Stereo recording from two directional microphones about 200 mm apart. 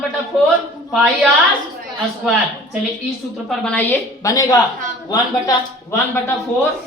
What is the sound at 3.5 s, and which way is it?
Speech, 5° left (ahead or behind).